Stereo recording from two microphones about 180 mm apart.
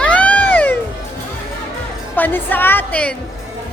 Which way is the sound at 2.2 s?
10° left (ahead or behind).